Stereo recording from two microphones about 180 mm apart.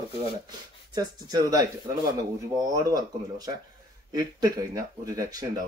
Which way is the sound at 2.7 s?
20° right (ahead or behind).